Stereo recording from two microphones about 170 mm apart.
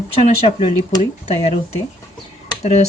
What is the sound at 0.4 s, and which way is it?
Speech, 30° left (ahead or behind).